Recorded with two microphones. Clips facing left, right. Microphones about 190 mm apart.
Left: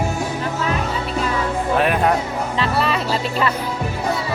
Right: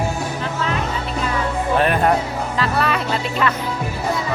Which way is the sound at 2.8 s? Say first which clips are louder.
Even; 30° left (ahead or behind).